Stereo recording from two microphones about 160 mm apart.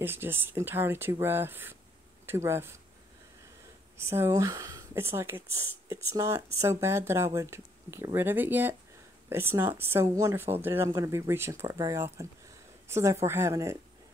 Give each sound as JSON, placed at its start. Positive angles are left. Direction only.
{"t": 0.0, "sound": "speech", "side_deg": -15}
{"t": 4.0, "sound": "speech", "side_deg": -15}